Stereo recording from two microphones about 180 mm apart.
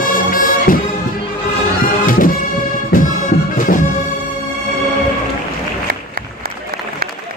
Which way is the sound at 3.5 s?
50° left (ahead or behind).